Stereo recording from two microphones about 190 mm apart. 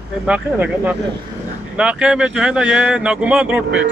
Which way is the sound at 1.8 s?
5° right (ahead or behind).